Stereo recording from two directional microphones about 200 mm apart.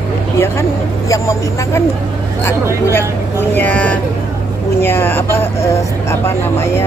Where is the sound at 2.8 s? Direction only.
10° left (ahead or behind).